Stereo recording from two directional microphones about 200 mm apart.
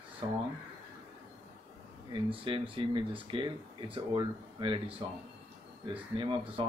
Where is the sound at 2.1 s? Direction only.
25° right (ahead or behind).